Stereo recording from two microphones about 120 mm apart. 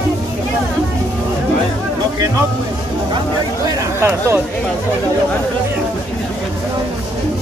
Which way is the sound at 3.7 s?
25° right (ahead or behind).